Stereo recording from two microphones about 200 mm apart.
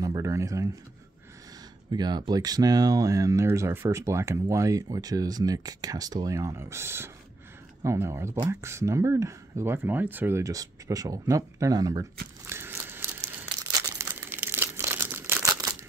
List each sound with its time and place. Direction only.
0.0 s speech: 15° right (ahead or behind)
1.9 s speech: 20° right (ahead or behind)
12.4 s crumpling: 10° right (ahead or behind)